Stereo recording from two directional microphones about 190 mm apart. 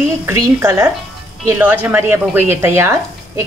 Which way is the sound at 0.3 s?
15° right (ahead or behind).